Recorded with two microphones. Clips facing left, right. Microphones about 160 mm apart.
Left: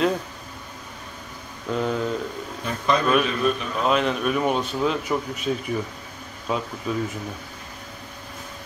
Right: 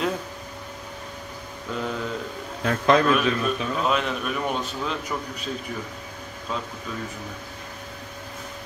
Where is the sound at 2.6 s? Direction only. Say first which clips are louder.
Right 4 dB; 90° right.